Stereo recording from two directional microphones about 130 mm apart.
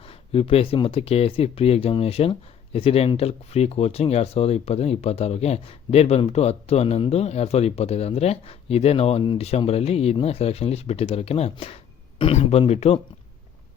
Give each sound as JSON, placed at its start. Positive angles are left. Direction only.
{"t": 0.0, "sound": "speech", "side_deg": 45}